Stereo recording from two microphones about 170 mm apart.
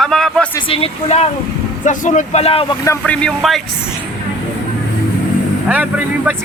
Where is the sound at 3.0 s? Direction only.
5° left (ahead or behind).